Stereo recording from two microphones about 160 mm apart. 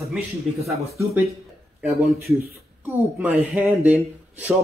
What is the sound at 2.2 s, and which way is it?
Speech, 75° right (ahead or behind).